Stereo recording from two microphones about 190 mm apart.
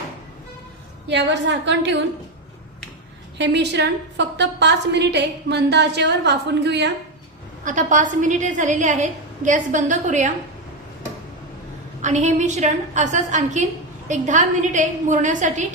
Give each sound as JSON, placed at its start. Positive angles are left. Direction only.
{"t": 1.0, "sound": "a woman's voice", "side_deg": -65}
{"t": 3.3, "sound": "a woman's voice", "side_deg": -65}
{"t": 7.6, "sound": "a woman's voice", "side_deg": -40}
{"t": 12.0, "sound": "a woman's voice", "side_deg": -40}